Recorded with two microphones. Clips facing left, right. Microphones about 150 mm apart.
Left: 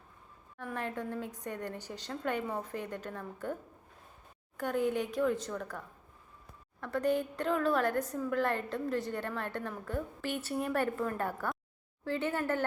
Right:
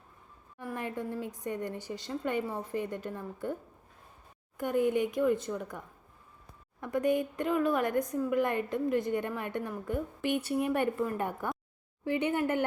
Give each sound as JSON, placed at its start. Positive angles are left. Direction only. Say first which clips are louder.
{"t": 0.6, "sound": "a woman's voice", "louder": "right 1 dB", "side_deg": -10}
{"t": 4.5, "sound": "a woman's voice", "louder": "right 3 dB", "side_deg": -10}